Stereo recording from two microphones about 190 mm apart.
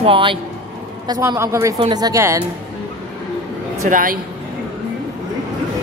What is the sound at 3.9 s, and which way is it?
Speech, 45° right (ahead or behind).